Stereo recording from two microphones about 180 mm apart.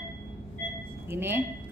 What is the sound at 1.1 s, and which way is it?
Speech, 10° right (ahead or behind).